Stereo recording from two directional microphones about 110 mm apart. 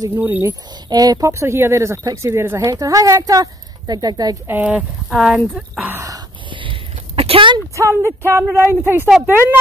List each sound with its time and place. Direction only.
0.1 s speech: 20° right (ahead or behind)
0.5 s speech: 35° right (ahead or behind)
4.5 s speech: 15° right (ahead or behind)
5.9 s speech: 30° right (ahead or behind)
6.5 s a sound: 50° right (ahead or behind)
7.7 s speech: 25° right (ahead or behind)